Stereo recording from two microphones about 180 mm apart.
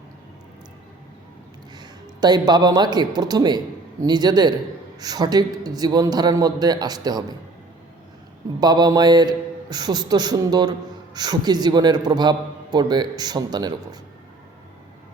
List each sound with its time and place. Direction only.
1.8 s a man's voice: 25° right (ahead or behind)
8.6 s a man's voice: 20° right (ahead or behind)